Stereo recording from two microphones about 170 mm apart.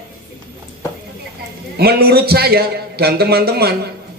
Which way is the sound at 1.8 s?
65° right (ahead or behind).